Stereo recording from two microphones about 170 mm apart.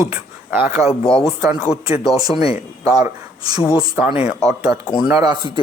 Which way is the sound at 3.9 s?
10° right (ahead or behind).